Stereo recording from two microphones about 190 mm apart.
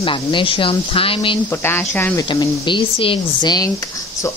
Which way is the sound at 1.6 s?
10° left (ahead or behind).